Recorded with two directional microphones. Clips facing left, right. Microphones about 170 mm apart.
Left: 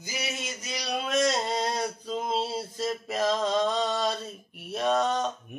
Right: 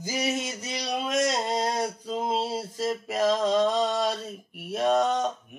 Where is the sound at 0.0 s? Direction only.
45° right (ahead or behind).